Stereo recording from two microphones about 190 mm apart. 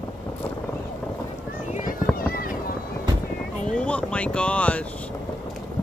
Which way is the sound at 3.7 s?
5° left (ahead or behind).